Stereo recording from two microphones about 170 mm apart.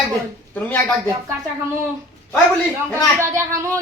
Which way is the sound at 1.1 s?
15° right (ahead or behind).